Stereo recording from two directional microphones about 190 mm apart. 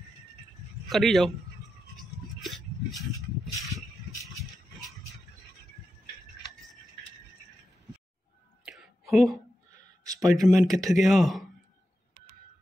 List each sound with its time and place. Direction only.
0.8 s speech: centre (ahead or behind)
2.0 s a sound: centre (ahead or behind)
4.2 s music: centre (ahead or behind)
8.6 s whispering: centre (ahead or behind)
10.0 s a sound: 20° right (ahead or behind)
10.4 s speech: centre (ahead or behind)